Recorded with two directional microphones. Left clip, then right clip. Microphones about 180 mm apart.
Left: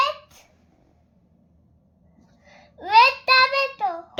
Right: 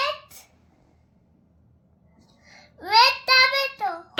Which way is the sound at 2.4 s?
15° left (ahead or behind).